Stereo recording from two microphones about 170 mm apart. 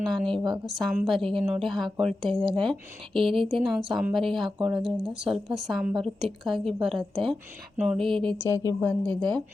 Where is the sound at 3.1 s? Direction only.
30° right (ahead or behind).